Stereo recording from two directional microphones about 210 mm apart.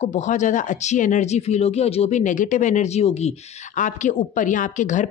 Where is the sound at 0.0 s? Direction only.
35° left (ahead or behind).